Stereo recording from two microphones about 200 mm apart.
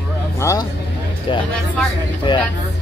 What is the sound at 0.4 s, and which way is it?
Speech, 15° left (ahead or behind).